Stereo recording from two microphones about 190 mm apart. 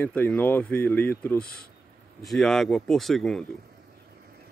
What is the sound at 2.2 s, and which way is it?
Speech, centre (ahead or behind).